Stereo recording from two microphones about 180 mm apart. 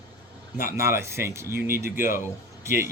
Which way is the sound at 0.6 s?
55° left (ahead or behind).